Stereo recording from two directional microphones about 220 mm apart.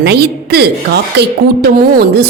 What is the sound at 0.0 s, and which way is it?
A woman's voice, 50° right (ahead or behind).